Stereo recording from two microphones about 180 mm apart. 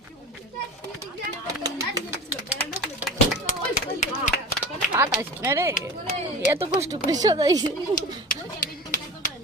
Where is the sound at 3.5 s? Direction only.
40° left (ahead or behind).